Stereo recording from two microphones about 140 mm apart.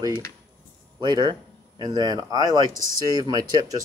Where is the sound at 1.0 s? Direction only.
30° right (ahead or behind).